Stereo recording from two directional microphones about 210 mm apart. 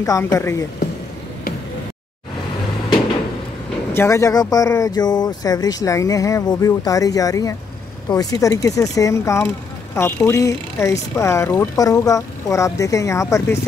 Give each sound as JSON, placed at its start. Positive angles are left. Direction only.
{"t": 0.0, "sound": "speech", "side_deg": 15}
{"t": 3.9, "sound": "speech", "side_deg": 15}